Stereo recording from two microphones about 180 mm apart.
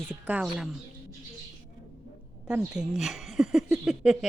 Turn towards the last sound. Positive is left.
turn(degrees=-5)  # may be behind; listen again after turning